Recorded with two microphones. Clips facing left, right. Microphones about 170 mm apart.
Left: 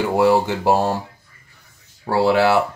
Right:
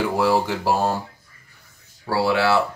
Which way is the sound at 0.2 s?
20° left (ahead or behind).